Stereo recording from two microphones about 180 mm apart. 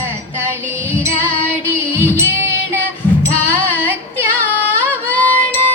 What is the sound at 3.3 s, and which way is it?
Music, 10° left (ahead or behind).